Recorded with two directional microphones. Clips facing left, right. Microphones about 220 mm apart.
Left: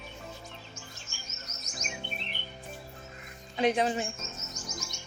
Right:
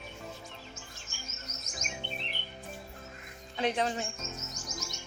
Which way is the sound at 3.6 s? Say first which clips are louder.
Left 4 dB; 15° left (ahead or behind).